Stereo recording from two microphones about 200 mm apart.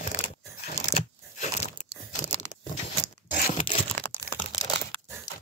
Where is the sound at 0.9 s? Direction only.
35° left (ahead or behind).